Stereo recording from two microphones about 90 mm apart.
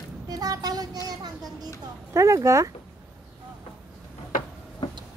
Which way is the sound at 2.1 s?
35° right (ahead or behind).